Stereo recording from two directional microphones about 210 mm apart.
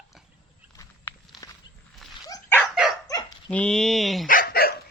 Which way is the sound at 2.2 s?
15° left (ahead or behind).